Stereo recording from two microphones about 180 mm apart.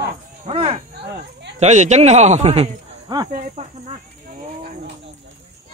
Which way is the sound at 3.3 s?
50° right (ahead or behind).